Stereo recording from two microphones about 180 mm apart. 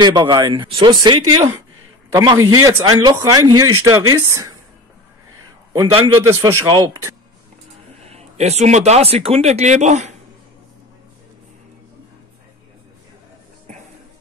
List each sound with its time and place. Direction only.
0.0 s a man's voice: 25° right (ahead or behind)
5.7 s a man's voice: 20° right (ahead or behind)
8.0 s speech: 35° right (ahead or behind)